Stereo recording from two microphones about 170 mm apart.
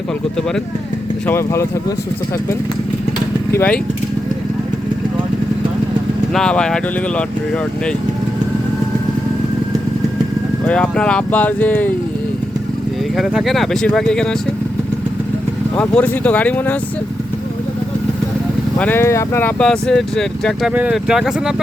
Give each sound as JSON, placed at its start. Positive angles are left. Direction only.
{"t": 1.3, "sound": "speech", "side_deg": 15}
{"t": 3.5, "sound": "speech", "side_deg": 10}
{"t": 6.3, "sound": "speech", "side_deg": 5}
{"t": 10.7, "sound": "speech", "side_deg": 5}
{"t": 13.1, "sound": "speech", "side_deg": 0}
{"t": 15.7, "sound": "speech", "side_deg": 10}
{"t": 18.8, "sound": "speech", "side_deg": 10}